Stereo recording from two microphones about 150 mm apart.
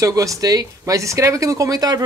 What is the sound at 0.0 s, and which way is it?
Speech, 20° right (ahead or behind).